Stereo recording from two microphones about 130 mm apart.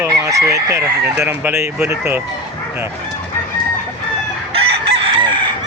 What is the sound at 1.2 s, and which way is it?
Speech, 15° right (ahead or behind).